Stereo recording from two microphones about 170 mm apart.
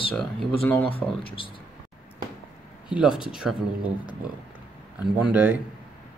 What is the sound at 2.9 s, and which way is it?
Speech, 5° right (ahead or behind).